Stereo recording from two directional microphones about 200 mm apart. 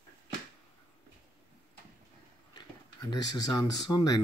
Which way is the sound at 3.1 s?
20° left (ahead or behind).